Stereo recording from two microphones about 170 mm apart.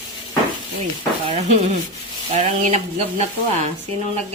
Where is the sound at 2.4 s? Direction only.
40° right (ahead or behind).